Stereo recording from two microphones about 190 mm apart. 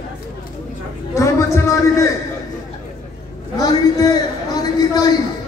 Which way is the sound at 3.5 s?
20° left (ahead or behind).